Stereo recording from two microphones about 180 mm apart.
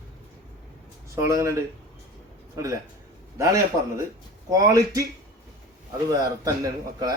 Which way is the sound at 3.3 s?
15° right (ahead or behind).